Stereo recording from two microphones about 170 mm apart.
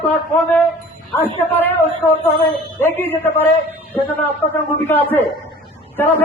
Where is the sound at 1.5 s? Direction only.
10° left (ahead or behind).